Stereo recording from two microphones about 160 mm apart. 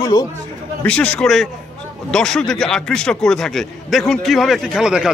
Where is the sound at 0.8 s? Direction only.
5° left (ahead or behind).